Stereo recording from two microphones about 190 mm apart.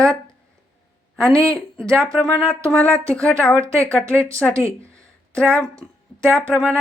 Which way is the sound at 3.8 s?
5° left (ahead or behind).